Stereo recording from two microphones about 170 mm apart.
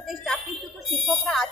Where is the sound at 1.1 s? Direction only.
Centre (ahead or behind).